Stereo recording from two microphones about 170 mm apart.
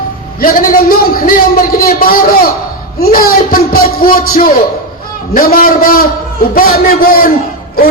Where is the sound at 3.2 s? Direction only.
60° left (ahead or behind).